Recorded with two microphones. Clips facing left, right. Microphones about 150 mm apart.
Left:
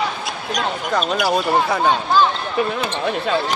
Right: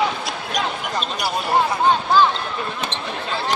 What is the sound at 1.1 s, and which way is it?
Speech, 90° left.